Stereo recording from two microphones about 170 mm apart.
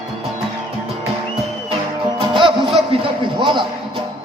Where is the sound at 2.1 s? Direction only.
30° right (ahead or behind).